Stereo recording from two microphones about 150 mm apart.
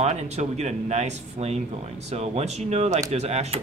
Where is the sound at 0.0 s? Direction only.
45° right (ahead or behind).